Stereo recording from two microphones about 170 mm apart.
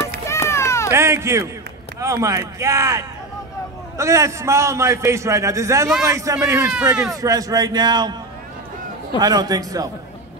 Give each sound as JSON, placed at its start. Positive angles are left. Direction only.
{"t": 0.2, "sound": "run", "side_deg": 15}
{"t": 0.9, "sound": "a man's voice", "side_deg": -15}
{"t": 7.2, "sound": "a man's voice", "side_deg": -20}
{"t": 9.2, "sound": "a man's voice", "side_deg": -25}